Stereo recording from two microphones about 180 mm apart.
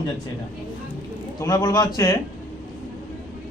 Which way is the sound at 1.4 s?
20° left (ahead or behind).